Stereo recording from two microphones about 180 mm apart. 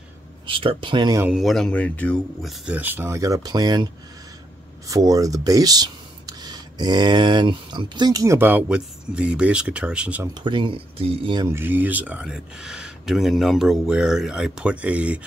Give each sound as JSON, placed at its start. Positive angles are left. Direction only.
{"t": 0.5, "sound": "speech", "side_deg": -30}
{"t": 1.2, "sound": "speech", "side_deg": 0}
{"t": 10.2, "sound": "speech", "side_deg": -25}
{"t": 11.4, "sound": "speech", "side_deg": -10}